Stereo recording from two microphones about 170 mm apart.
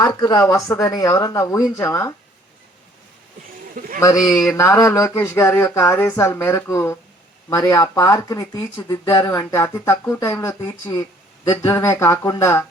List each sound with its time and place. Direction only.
0.0 s speech: 20° left (ahead or behind)
3.8 s a sound: 55° right (ahead or behind)
4.0 s speech: 20° left (ahead or behind)